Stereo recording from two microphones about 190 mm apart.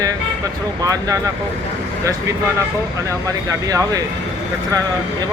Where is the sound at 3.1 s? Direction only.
15° right (ahead or behind).